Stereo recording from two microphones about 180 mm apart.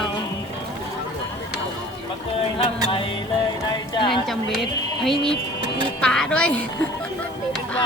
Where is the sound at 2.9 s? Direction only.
30° left (ahead or behind).